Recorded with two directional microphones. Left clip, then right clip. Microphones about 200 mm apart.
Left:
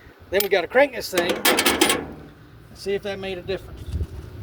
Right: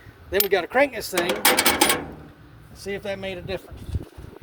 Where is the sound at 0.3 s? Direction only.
45° right (ahead or behind).